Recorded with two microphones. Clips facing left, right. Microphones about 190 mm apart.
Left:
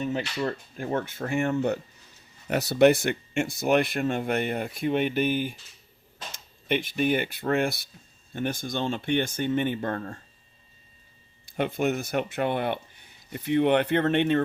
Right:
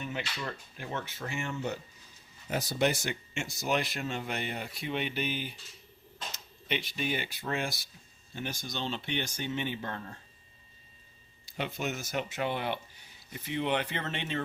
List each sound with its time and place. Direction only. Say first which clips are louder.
0.0 s speech: left 9 dB; 35° left (ahead or behind)
11.4 s speech: left 9 dB; 55° left (ahead or behind)